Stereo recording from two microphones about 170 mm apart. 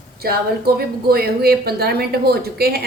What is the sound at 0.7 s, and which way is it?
Speech, 65° right (ahead or behind).